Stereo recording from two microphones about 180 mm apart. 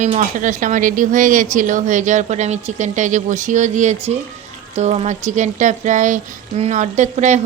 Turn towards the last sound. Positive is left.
turn(degrees=-40)  # may be behind; listen again after turning